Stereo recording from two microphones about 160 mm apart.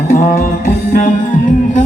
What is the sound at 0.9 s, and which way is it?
Music, 55° left (ahead or behind).